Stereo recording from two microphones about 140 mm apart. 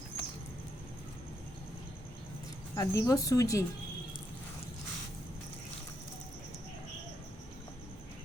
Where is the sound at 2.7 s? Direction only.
20° left (ahead or behind).